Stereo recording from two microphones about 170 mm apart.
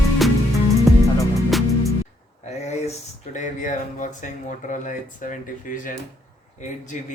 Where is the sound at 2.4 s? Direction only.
40° left (ahead or behind).